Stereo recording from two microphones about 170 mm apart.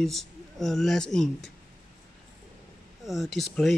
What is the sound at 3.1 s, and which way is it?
Speech, centre (ahead or behind).